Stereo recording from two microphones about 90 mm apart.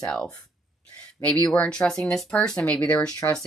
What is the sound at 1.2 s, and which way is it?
Speech, 30° left (ahead or behind).